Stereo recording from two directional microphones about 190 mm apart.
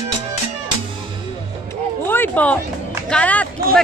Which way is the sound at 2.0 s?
10° left (ahead or behind).